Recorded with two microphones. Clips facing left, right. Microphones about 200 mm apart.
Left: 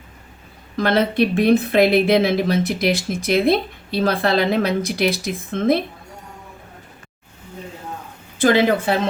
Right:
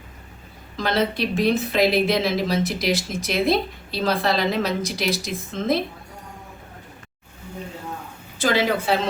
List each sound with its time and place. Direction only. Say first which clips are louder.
0.8 s a woman's voice: left 5 dB; 55° left (ahead or behind)
8.4 s speech: left 6 dB; 55° left (ahead or behind)